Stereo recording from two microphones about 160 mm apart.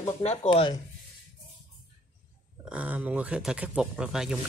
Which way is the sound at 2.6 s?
10° right (ahead or behind).